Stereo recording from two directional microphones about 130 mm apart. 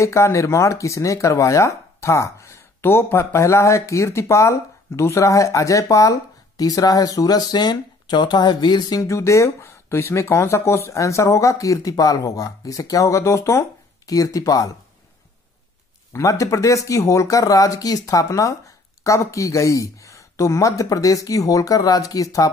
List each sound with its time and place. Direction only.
0.0 s speech: 25° left (ahead or behind)
16.1 s speech: 25° left (ahead or behind)